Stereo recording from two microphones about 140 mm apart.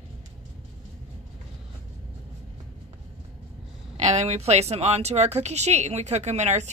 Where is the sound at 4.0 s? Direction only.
55° right (ahead or behind).